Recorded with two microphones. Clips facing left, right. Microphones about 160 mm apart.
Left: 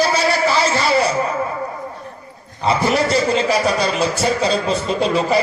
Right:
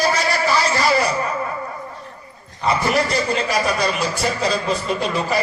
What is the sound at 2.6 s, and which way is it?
A man's voice, 25° left (ahead or behind).